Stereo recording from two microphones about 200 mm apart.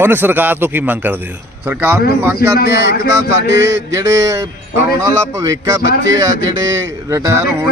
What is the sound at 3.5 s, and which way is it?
Mantra, 60° right (ahead or behind).